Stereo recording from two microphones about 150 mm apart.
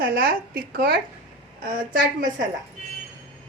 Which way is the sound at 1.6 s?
70° right (ahead or behind).